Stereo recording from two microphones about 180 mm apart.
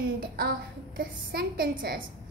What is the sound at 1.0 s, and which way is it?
A child's voice, 55° right (ahead or behind).